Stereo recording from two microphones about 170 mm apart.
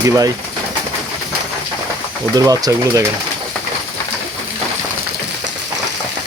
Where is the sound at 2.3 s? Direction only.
20° right (ahead or behind).